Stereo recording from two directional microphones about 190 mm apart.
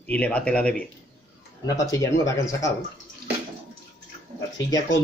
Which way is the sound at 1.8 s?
15° left (ahead or behind).